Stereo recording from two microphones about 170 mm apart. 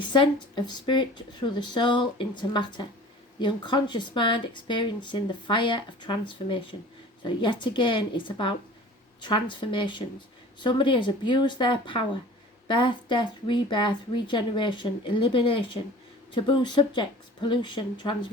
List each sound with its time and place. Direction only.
0.1 s speech: 25° left (ahead or behind)